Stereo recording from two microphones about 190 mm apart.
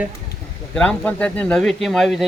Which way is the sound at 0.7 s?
5° left (ahead or behind).